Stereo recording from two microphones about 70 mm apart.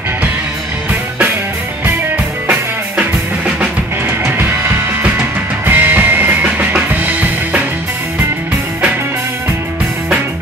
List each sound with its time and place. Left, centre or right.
2.4 s music: centre
4.2 s music: right
5.7 s music: right